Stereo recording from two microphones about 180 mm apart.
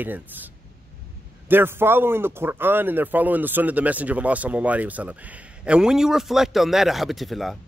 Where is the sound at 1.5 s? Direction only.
10° right (ahead or behind).